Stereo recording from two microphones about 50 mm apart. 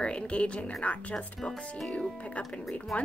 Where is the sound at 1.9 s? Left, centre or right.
Left.